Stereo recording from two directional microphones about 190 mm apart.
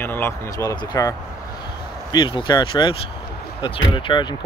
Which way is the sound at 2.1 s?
25° left (ahead or behind).